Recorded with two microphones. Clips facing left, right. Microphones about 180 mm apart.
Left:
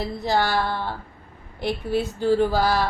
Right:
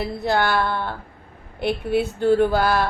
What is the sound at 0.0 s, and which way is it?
Speech, 60° right (ahead or behind).